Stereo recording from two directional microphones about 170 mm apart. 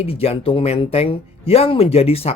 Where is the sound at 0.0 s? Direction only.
35° left (ahead or behind).